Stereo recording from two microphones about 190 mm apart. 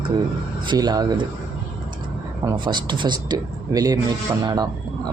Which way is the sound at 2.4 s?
25° right (ahead or behind).